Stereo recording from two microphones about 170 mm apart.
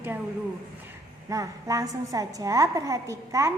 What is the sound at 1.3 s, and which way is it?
A woman's voice, 20° right (ahead or behind).